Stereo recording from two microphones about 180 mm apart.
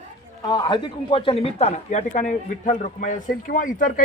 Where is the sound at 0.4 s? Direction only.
20° left (ahead or behind).